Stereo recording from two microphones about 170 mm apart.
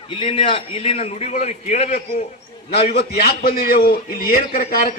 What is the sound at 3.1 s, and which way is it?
A man's voice, 60° left (ahead or behind).